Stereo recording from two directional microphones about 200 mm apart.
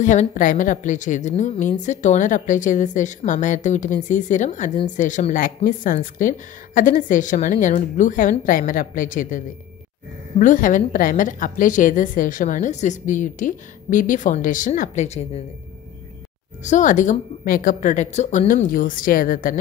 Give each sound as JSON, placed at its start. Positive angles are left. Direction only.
{"t": 0.0, "sound": "a woman's voice", "side_deg": 40}
{"t": 10.4, "sound": "a woman's voice", "side_deg": 40}
{"t": 16.6, "sound": "a woman's voice", "side_deg": 40}